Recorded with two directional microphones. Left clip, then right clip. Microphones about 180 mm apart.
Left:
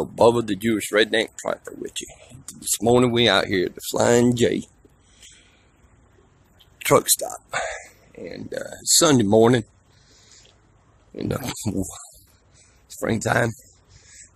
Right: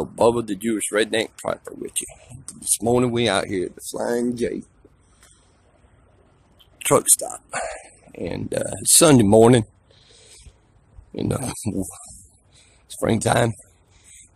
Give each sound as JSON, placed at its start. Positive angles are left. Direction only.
{"t": 0.0, "sound": "speech", "side_deg": 0}
{"t": 4.4, "sound": "speech", "side_deg": 25}
{"t": 6.8, "sound": "speech", "side_deg": -5}
{"t": 8.1, "sound": "speech", "side_deg": -25}
{"t": 11.6, "sound": "speech", "side_deg": -10}
{"t": 12.8, "sound": "speech", "side_deg": -30}